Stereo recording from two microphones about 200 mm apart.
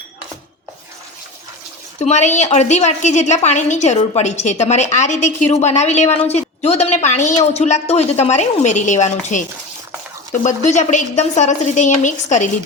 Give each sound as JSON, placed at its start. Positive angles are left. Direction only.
{"t": 2.0, "sound": "a woman's voice", "side_deg": 35}
{"t": 10.4, "sound": "a woman's voice", "side_deg": 35}